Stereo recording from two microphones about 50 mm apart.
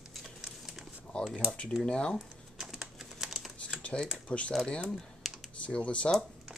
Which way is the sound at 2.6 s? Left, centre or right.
Centre.